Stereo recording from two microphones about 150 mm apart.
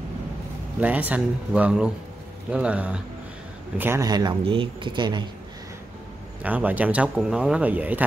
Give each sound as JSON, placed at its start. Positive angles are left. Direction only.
{"t": 0.7, "sound": "speech", "side_deg": -10}
{"t": 4.0, "sound": "speech", "side_deg": -25}
{"t": 6.4, "sound": "speech", "side_deg": -10}